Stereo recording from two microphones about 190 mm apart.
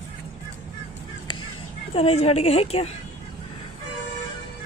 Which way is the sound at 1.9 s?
35° left (ahead or behind).